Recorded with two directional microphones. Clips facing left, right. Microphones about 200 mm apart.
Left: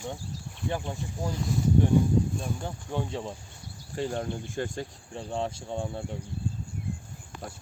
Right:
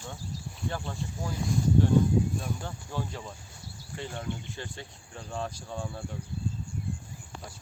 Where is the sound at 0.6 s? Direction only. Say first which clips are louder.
Left 3 dB; 15° left (ahead or behind).